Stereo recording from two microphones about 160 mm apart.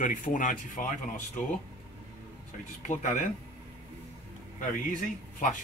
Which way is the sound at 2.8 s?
50° left (ahead or behind).